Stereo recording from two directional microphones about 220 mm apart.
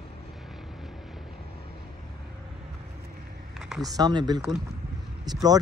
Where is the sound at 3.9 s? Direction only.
20° right (ahead or behind).